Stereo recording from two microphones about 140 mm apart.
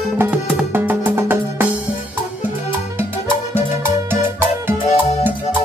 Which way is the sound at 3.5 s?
15° right (ahead or behind).